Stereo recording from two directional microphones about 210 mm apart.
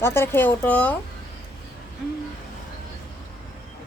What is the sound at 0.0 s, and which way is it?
Speech, 10° left (ahead or behind).